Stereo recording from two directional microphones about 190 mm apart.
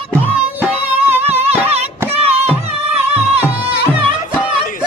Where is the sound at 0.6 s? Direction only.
10° right (ahead or behind).